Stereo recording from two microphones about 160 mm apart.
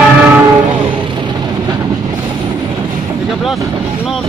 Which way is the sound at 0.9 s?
30° right (ahead or behind).